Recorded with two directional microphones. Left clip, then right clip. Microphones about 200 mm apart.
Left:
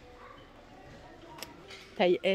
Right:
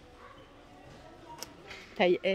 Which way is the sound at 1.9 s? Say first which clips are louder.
Even; 5° left (ahead or behind).